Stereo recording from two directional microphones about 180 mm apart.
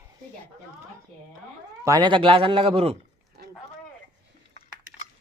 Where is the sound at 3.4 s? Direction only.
60° right (ahead or behind).